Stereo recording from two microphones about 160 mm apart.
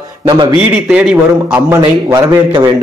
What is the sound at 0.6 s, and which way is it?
Speech, 5° right (ahead or behind).